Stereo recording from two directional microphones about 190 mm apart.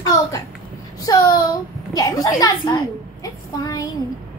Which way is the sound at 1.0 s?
20° left (ahead or behind).